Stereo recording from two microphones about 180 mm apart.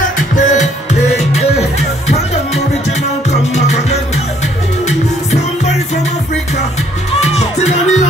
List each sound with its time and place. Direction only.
0.4 s music: 40° left (ahead or behind)
7.3 s music: 40° left (ahead or behind)